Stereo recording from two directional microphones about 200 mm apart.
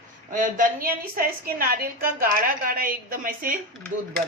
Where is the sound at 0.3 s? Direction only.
40° right (ahead or behind).